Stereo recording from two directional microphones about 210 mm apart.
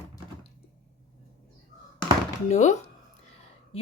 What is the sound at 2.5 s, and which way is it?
Speech, 35° left (ahead or behind).